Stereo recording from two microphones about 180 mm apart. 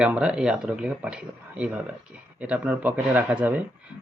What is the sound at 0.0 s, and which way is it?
Speech, 5° right (ahead or behind).